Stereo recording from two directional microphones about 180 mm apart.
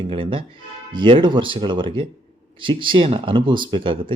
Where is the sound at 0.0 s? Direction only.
30° right (ahead or behind).